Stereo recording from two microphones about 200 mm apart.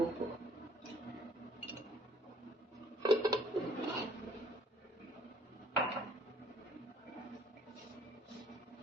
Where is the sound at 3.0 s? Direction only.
20° right (ahead or behind).